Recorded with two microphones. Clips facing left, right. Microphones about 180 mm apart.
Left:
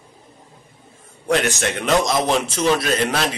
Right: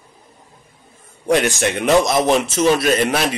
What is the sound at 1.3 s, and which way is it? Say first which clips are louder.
Speech: right 3 dB; 15° right (ahead or behind).